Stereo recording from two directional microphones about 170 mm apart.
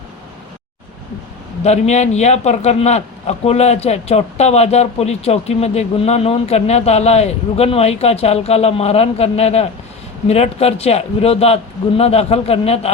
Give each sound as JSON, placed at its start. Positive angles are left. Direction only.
{"t": 1.6, "sound": "a man's voice", "side_deg": 40}